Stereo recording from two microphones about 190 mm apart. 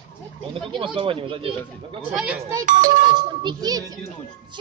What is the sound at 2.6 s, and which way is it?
Speech, 40° right (ahead or behind).